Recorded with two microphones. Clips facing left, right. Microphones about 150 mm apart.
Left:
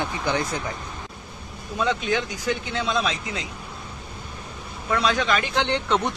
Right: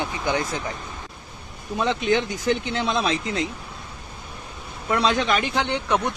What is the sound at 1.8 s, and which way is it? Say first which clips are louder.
Speech: right 2 dB; 25° right (ahead or behind).